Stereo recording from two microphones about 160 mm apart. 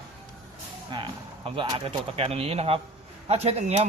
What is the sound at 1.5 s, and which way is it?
Speech, 30° right (ahead or behind).